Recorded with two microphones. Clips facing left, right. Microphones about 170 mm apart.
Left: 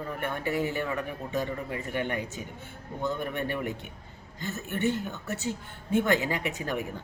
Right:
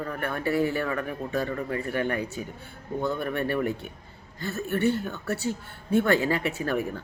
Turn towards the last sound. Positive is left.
turn(degrees=15)  # may be behind; listen again after turning